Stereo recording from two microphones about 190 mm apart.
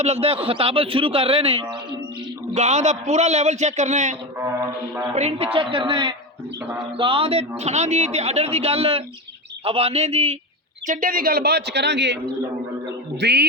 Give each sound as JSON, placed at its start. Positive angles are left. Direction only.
{"t": 0.0, "sound": "a man's voice", "side_deg": -35}
{"t": 10.8, "sound": "speech", "side_deg": -45}